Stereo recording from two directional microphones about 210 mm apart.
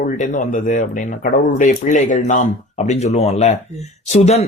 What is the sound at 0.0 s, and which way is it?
Speech, 40° left (ahead or behind).